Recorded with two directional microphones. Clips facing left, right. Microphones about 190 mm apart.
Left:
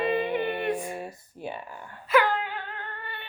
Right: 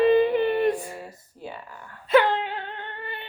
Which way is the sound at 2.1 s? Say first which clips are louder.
Right 4 dB; 30° right (ahead or behind).